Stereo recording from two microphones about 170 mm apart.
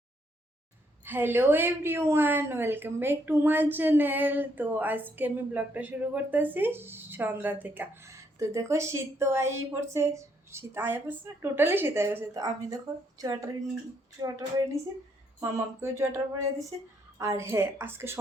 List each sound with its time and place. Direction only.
1.0 s speech: 10° right (ahead or behind)
15.4 s speech: 15° right (ahead or behind)